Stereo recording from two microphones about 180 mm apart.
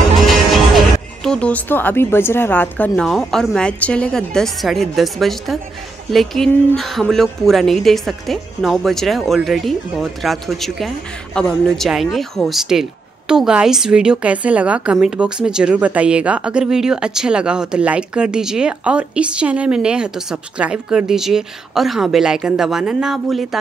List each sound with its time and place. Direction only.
0.2 s a woman's voice: centre (ahead or behind)